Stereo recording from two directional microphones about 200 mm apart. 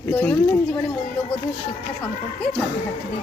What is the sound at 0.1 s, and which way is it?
Speech, 10° left (ahead or behind).